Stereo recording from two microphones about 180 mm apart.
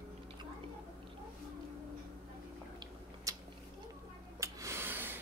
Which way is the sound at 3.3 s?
20° right (ahead or behind).